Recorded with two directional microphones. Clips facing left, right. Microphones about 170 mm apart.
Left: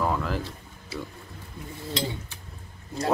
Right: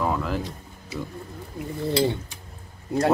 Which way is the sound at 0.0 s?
Centre (ahead or behind).